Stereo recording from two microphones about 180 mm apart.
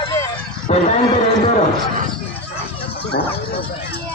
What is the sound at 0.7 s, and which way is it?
Speech, 35° left (ahead or behind).